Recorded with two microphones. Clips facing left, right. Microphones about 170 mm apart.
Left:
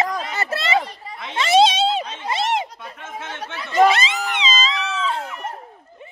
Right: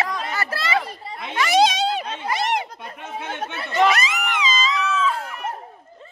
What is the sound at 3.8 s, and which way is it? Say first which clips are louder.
Cat: left 2 dB; 25° left (ahead or behind).